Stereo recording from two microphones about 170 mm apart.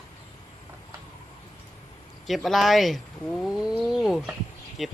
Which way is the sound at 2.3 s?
Centre (ahead or behind).